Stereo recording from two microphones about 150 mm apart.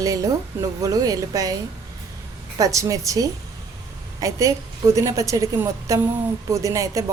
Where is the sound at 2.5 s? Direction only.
20° right (ahead or behind).